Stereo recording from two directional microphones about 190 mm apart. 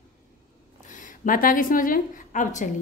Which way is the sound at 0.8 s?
40° left (ahead or behind).